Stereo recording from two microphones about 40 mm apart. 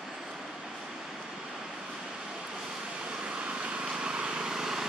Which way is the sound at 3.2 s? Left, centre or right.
Right.